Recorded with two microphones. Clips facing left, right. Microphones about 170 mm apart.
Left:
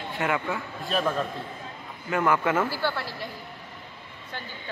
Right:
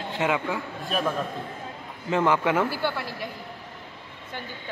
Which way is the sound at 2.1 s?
20° right (ahead or behind).